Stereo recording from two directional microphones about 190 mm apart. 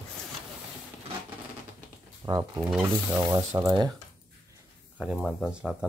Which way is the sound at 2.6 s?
5° right (ahead or behind).